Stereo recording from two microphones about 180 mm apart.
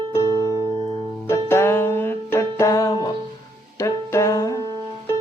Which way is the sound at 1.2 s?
15° left (ahead or behind).